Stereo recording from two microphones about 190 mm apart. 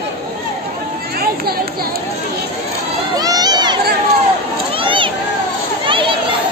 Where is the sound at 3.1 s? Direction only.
20° right (ahead or behind).